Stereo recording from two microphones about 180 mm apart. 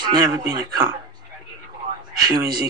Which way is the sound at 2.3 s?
25° right (ahead or behind).